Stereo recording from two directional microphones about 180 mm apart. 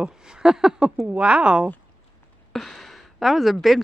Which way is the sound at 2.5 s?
5° left (ahead or behind).